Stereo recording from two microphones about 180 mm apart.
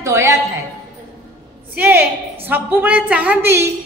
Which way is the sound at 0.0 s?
15° right (ahead or behind).